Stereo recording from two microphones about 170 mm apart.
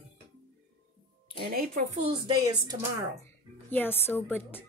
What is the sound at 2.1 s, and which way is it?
Speech, 25° right (ahead or behind).